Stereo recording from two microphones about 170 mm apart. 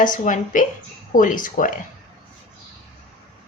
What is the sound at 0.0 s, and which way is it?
Speech, 50° left (ahead or behind).